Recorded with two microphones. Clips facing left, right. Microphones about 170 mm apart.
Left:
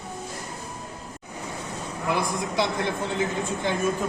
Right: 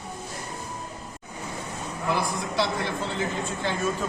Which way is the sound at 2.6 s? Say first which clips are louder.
Left 1 dB; 15° left (ahead or behind).